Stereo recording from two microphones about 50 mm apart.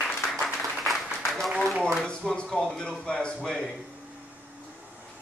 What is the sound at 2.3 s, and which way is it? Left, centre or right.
Speech, centre.